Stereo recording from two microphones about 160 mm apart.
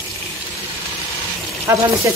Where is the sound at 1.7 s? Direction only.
20° right (ahead or behind).